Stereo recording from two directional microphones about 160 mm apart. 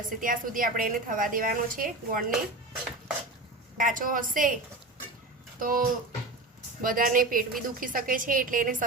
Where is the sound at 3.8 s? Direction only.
55° right (ahead or behind).